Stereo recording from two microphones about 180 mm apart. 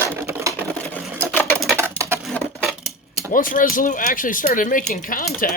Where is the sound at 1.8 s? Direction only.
15° right (ahead or behind).